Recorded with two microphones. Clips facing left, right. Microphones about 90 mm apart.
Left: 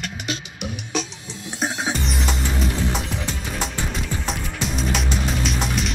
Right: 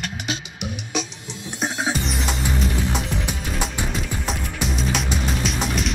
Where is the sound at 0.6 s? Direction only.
20° right (ahead or behind).